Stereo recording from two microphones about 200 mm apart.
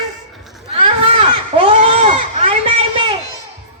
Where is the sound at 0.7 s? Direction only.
25° right (ahead or behind).